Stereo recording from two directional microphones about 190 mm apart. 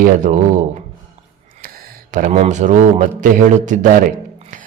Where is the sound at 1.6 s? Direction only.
45° right (ahead or behind).